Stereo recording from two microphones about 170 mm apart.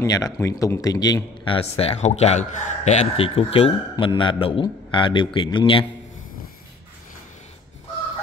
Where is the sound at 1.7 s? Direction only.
35° left (ahead or behind).